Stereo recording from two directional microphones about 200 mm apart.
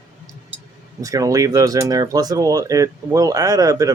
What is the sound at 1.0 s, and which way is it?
Speech, 15° right (ahead or behind).